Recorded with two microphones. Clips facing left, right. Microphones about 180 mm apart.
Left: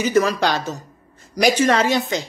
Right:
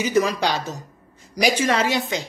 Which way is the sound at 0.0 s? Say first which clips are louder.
Left 2 dB; 15° right (ahead or behind).